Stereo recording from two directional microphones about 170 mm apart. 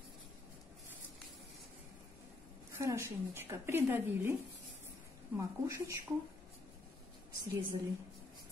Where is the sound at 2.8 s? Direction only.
15° right (ahead or behind).